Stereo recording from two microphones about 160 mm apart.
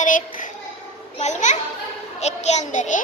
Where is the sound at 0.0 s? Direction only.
55° left (ahead or behind).